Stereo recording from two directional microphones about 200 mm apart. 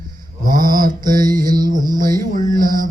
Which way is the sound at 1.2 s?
20° right (ahead or behind).